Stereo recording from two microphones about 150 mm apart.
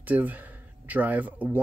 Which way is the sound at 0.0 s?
10° right (ahead or behind).